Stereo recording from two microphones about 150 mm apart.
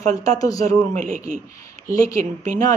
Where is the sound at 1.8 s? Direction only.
20° left (ahead or behind).